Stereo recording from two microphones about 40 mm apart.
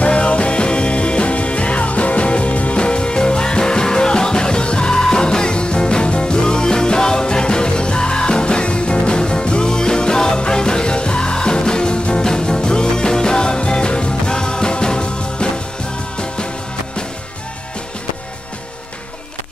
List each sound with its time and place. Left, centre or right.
0.0 s music: left